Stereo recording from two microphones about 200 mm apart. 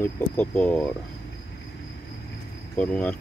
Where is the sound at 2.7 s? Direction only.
10° left (ahead or behind).